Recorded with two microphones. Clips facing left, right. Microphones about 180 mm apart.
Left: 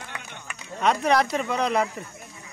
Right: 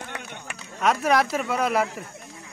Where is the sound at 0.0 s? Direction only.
55° right (ahead or behind).